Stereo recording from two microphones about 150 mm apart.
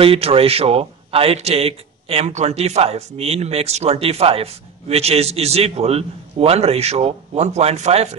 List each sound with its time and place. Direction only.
0.0 s speech: 40° right (ahead or behind)